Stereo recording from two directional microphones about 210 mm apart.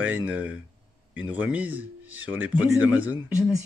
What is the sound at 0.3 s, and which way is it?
A man's voice, 5° right (ahead or behind).